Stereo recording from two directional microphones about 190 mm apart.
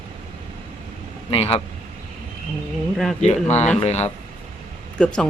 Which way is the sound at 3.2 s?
35° left (ahead or behind).